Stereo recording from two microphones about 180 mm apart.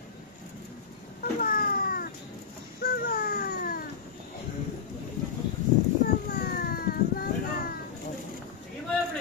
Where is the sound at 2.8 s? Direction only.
50° left (ahead or behind).